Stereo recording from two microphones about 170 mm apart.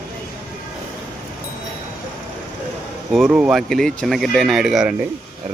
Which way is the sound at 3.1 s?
Centre (ahead or behind).